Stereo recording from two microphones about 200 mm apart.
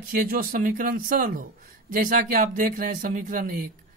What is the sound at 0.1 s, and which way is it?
A man's voice, 45° right (ahead or behind).